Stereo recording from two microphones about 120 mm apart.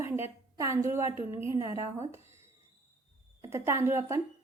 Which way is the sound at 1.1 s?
50° left (ahead or behind).